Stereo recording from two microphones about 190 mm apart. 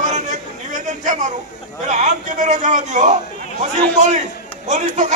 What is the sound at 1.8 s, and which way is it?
A man's voice, 40° right (ahead or behind).